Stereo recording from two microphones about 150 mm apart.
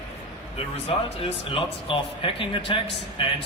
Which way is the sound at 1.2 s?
35° left (ahead or behind).